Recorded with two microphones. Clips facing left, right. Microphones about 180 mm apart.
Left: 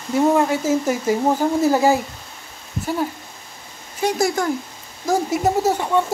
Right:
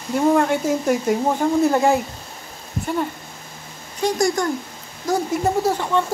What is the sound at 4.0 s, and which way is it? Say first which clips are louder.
Speech: even; 5° left (ahead or behind).